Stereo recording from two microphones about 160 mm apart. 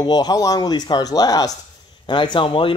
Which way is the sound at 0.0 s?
25° left (ahead or behind).